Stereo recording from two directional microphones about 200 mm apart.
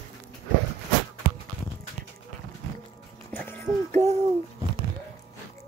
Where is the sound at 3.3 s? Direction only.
10° left (ahead or behind).